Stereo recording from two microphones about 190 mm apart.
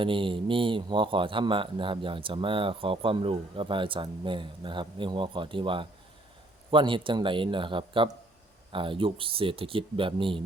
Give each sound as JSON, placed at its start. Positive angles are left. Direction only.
{"t": 0.0, "sound": "speech", "side_deg": -25}